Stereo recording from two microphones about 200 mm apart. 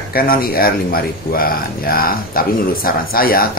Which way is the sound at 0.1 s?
45° left (ahead or behind).